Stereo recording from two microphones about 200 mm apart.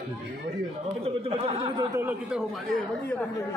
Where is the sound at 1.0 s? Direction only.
30° right (ahead or behind).